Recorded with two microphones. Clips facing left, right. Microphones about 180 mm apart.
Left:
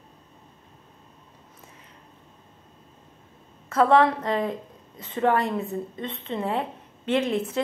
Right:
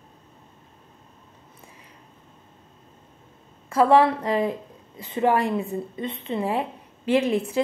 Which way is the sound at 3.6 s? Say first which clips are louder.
Right 1 dB; 10° right (ahead or behind).